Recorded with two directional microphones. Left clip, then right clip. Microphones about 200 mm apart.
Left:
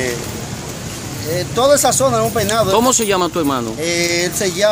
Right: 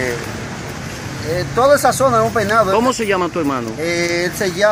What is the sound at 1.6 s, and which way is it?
Speech, 5° left (ahead or behind).